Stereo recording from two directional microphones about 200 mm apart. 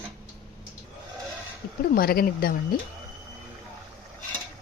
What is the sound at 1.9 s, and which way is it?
Speech, 50° left (ahead or behind).